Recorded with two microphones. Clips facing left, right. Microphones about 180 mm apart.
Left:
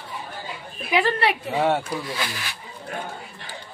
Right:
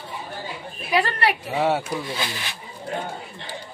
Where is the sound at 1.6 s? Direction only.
5° right (ahead or behind).